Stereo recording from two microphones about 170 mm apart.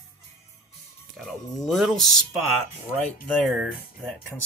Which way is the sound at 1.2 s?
Centre (ahead or behind).